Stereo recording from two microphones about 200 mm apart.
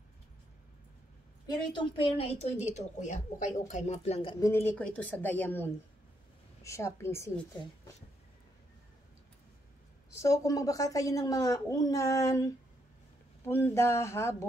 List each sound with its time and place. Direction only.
1.5 s a woman's voice: 25° left (ahead or behind)
4.5 s a woman's voice: 10° left (ahead or behind)
10.1 s a woman's voice: 15° left (ahead or behind)